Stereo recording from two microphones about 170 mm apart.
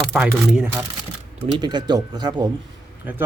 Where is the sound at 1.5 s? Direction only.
25° right (ahead or behind).